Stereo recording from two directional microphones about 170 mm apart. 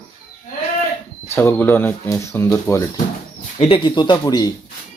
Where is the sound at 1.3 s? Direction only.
15° left (ahead or behind).